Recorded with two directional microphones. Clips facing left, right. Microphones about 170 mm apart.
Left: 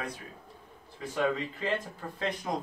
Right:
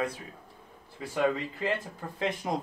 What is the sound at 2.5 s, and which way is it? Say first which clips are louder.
Speech: right 1 dB; 20° right (ahead or behind).